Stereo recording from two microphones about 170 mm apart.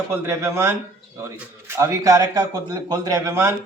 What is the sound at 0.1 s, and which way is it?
A man's voice, 15° right (ahead or behind).